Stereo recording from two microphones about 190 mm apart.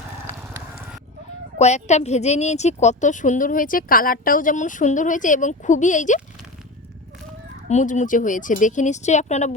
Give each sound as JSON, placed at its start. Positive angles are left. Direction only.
{"t": 1.5, "sound": "a woman's voice", "side_deg": 35}
{"t": 7.7, "sound": "a woman's voice", "side_deg": 40}